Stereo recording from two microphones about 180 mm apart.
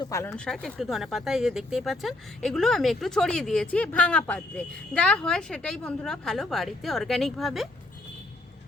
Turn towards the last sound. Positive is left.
turn(degrees=0)  # may be behind; listen again after turning